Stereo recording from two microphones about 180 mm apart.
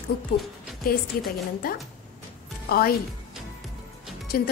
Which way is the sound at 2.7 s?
60° left (ahead or behind).